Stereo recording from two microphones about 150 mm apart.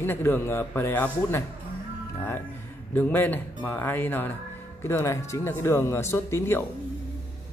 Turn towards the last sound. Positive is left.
turn(degrees=15)  # may be behind; listen again after turning